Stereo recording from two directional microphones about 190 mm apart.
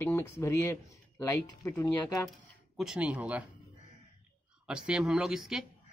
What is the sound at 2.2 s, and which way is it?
Speech, centre (ahead or behind).